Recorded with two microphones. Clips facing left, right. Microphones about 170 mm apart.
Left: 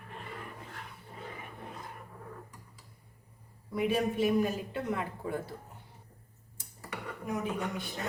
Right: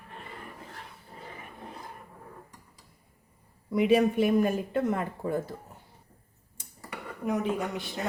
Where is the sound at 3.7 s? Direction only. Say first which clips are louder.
Right 7 dB; 90° right.